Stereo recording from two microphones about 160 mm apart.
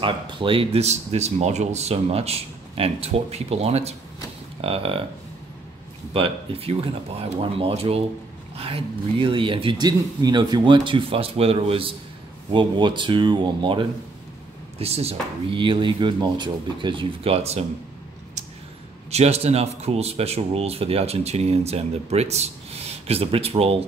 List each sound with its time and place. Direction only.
0.0 s speech: 35° right (ahead or behind)
6.1 s speech: 35° right (ahead or behind)
19.0 s speech: 40° right (ahead or behind)